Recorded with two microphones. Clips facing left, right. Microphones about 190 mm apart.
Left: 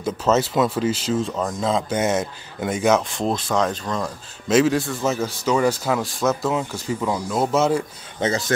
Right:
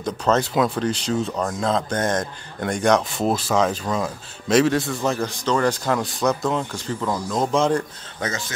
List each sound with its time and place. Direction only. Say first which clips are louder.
0.0 s speech: left 1 dB; 5° left (ahead or behind)
8.2 s speech: left 5 dB; 30° left (ahead or behind)